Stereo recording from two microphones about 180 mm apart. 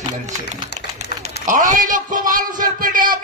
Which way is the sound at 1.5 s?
45° right (ahead or behind).